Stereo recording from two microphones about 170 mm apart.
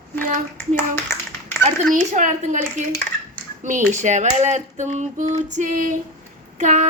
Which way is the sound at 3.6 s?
45° right (ahead or behind).